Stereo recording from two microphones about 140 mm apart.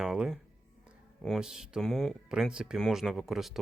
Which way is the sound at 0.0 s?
5° right (ahead or behind).